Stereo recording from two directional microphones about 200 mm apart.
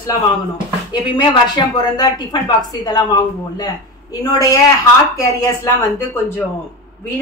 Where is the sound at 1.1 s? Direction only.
20° left (ahead or behind).